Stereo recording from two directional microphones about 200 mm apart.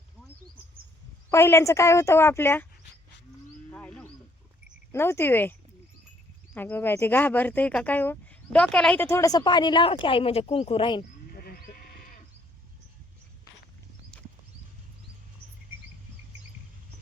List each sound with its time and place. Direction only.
1.3 s speech: 15° left (ahead or behind)
3.7 s wild animals: 5° left (ahead or behind)
4.9 s speech: 10° left (ahead or behind)
11.3 s sheep: 50° left (ahead or behind)